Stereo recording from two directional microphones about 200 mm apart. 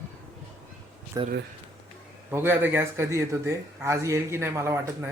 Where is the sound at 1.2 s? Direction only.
15° right (ahead or behind).